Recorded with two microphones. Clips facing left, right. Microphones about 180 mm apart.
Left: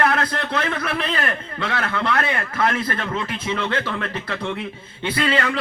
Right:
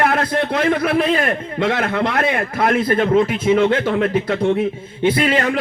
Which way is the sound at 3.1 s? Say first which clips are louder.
Right 11 dB; 45° right (ahead or behind).